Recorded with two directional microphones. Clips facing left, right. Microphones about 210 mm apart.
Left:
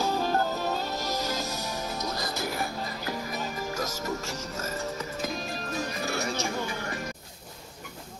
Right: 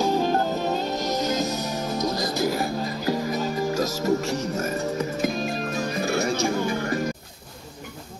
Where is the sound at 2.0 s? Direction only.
35° right (ahead or behind).